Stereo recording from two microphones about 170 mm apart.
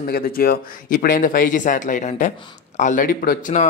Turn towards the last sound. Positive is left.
turn(degrees=50)  # may be behind; listen again after turning